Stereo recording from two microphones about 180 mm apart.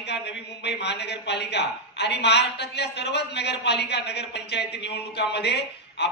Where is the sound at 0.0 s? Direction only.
70° left (ahead or behind).